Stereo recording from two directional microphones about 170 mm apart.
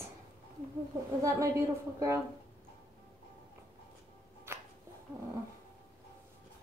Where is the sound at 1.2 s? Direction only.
20° right (ahead or behind).